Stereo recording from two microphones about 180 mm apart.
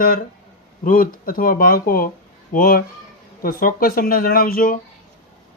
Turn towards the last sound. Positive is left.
turn(degrees=55)  # may be behind; listen again after turning